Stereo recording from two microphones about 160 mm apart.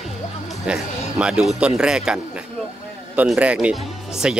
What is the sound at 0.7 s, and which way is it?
Speech, 5° right (ahead or behind).